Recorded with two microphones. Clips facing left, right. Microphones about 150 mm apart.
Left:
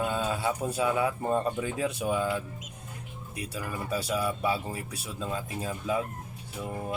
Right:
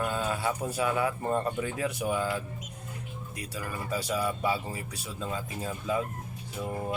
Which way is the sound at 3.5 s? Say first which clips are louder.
Left 1 dB; 5° left (ahead or behind).